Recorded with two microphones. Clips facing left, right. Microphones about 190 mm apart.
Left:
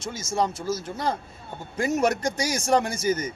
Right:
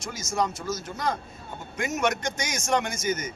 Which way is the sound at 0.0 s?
30° left (ahead or behind).